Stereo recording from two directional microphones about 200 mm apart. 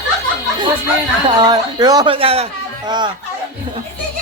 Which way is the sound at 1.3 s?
20° right (ahead or behind).